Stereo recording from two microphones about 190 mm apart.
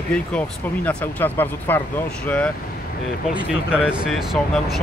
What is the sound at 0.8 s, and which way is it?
Speech, 10° left (ahead or behind).